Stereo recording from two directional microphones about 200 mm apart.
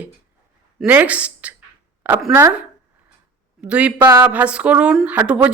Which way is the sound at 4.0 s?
20° right (ahead or behind).